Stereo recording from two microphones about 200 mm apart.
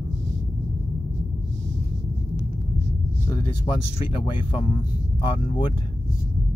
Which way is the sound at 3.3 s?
25° left (ahead or behind).